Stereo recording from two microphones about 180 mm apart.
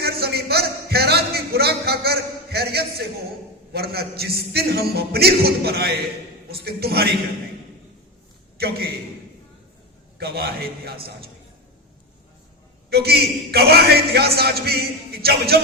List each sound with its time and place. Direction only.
0.0 s a sound: 60° right (ahead or behind)
3.7 s a man's voice: 60° right (ahead or behind)
8.5 s a man's voice: 60° right (ahead or behind)
10.2 s a man's voice: 60° right (ahead or behind)
12.9 s a man's voice: 60° right (ahead or behind)